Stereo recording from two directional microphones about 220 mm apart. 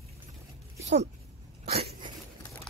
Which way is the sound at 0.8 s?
30° right (ahead or behind).